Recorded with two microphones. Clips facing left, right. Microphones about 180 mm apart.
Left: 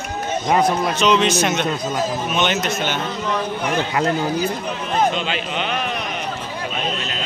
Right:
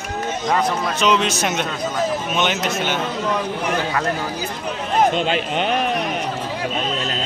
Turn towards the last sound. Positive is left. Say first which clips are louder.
# right 4 dB
turn(degrees=-50)  # may be behind; listen again after turning